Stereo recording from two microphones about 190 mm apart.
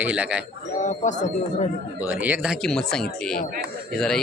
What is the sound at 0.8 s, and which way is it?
Speech, 40° left (ahead or behind).